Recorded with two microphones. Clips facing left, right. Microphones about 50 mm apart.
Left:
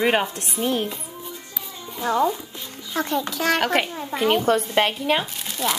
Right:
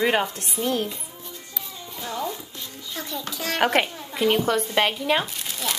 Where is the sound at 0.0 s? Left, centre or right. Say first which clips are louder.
Left 1 dB; centre.